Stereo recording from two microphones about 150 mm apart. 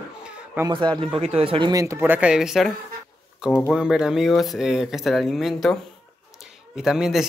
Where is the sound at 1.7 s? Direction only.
20° right (ahead or behind); by 5.7 s centre (ahead or behind).